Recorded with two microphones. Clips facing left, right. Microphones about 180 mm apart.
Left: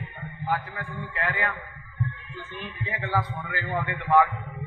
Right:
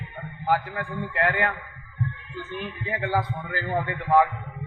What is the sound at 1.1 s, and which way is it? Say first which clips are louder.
Speech: right 5 dB; 60° right (ahead or behind).